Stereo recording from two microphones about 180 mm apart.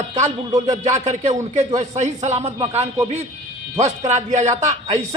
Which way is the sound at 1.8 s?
40° right (ahead or behind).